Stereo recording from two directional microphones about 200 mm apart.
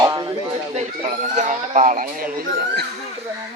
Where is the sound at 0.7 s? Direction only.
40° right (ahead or behind).